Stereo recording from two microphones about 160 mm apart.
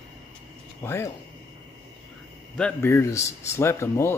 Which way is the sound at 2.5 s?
5° left (ahead or behind).